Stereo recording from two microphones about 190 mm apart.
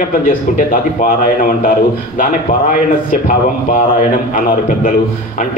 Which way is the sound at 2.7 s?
45° left (ahead or behind).